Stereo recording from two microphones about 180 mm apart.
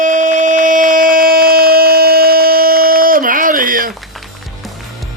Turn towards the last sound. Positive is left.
turn(degrees=-50)  # may be behind; listen again after turning